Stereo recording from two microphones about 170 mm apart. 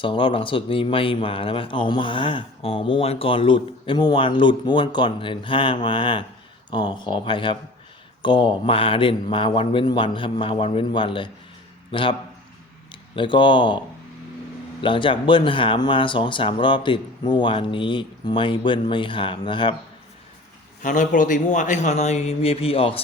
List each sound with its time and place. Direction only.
0.0 s a man's voice: 30° left (ahead or behind)
14.8 s a man's voice: 30° left (ahead or behind)
20.8 s a man's voice: 50° left (ahead or behind)